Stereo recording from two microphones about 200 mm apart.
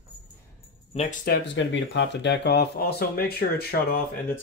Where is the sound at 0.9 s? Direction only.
35° left (ahead or behind).